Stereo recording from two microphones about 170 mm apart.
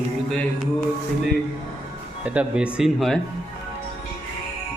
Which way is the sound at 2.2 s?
5° right (ahead or behind).